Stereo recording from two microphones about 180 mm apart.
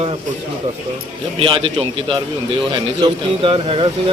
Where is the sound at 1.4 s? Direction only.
30° right (ahead or behind).